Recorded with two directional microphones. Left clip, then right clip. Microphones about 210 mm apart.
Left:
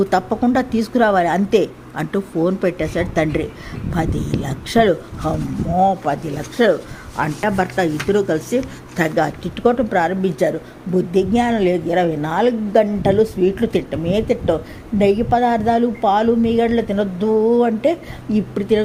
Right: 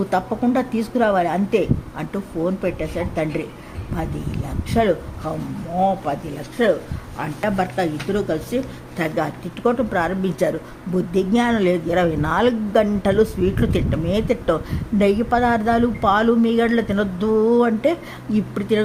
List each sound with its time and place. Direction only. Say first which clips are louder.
0.1 s a woman's voice: left 3 dB; 15° left (ahead or behind)